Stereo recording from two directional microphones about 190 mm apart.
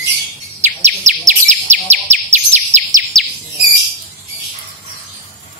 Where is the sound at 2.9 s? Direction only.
40° right (ahead or behind).